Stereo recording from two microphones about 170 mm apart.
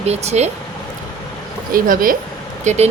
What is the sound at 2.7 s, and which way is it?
Speech, 45° right (ahead or behind).